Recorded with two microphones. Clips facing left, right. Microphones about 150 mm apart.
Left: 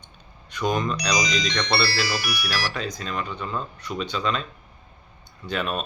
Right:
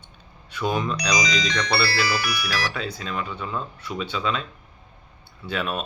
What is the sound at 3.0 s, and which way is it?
Speech, 5° right (ahead or behind).